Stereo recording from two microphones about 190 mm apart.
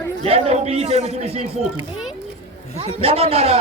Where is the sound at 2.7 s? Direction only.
30° right (ahead or behind).